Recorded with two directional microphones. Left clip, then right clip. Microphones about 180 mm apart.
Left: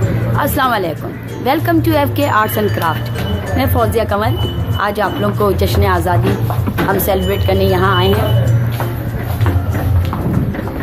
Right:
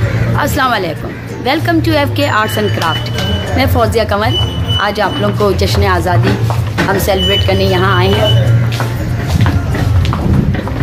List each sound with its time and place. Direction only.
0.4 s a woman's voice: 15° left (ahead or behind)
3.5 s speech: centre (ahead or behind)